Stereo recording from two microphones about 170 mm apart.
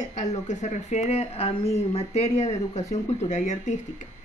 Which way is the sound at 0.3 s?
45° left (ahead or behind).